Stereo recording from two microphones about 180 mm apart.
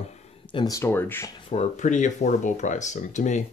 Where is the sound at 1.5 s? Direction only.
40° left (ahead or behind).